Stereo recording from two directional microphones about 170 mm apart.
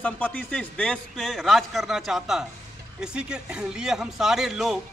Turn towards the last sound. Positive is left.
turn(degrees=0)  # may be behind; listen again after turning